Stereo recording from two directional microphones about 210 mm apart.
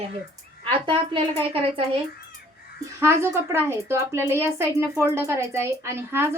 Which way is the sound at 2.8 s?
15° right (ahead or behind).